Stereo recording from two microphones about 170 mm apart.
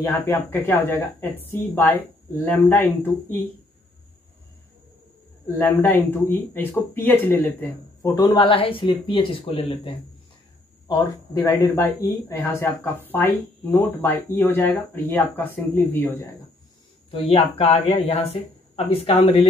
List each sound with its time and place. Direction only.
0.0 s speech: 10° left (ahead or behind)
5.6 s speech: 15° left (ahead or behind)
8.1 s speech: 25° left (ahead or behind)
10.9 s speech: 20° left (ahead or behind)
17.1 s speech: 35° left (ahead or behind)